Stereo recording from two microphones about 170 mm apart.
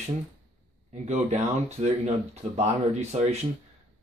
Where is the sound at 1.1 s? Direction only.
40° right (ahead or behind).